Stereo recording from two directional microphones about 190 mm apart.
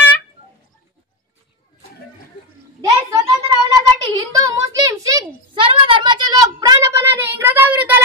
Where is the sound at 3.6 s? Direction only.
15° right (ahead or behind).